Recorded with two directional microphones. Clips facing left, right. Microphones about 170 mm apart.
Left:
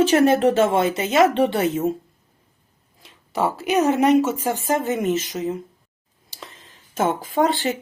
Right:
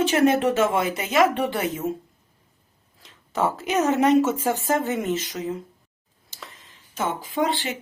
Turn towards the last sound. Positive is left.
turn(degrees=45)  # may be behind; listen again after turning